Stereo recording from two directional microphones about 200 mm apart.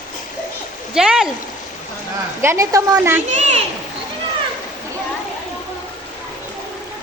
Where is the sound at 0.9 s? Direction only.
5° right (ahead or behind).